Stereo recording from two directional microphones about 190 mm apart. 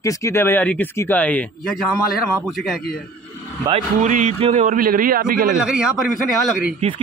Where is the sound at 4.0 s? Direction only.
40° right (ahead or behind).